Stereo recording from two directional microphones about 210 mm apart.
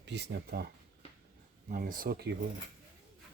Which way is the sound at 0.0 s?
55° right (ahead or behind).